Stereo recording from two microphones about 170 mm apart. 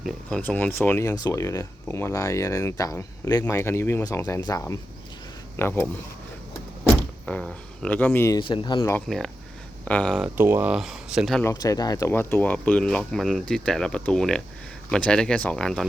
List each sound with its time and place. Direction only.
0.0 s speech: 5° left (ahead or behind)
8.4 s speech: 30° left (ahead or behind)
8.9 s speech: 5° left (ahead or behind)
10.2 s speech: 15° right (ahead or behind)
11.4 s speech: 20° left (ahead or behind); by 15.9 s 5° left (ahead or behind)